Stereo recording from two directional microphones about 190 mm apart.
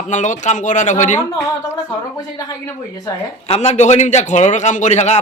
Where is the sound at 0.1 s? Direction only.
40° left (ahead or behind).